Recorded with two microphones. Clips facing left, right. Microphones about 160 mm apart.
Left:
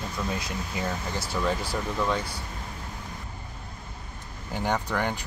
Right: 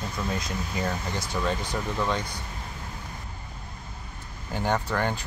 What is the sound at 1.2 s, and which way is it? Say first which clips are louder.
Speech: left 3 dB; 5° left (ahead or behind).